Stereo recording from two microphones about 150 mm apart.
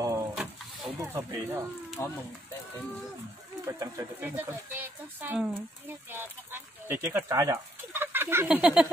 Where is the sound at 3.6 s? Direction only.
20° right (ahead or behind).